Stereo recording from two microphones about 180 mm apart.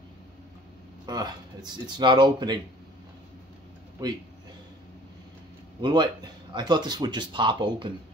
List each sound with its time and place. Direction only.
1.0 s speech: 20° right (ahead or behind)
5.8 s speech: 25° right (ahead or behind)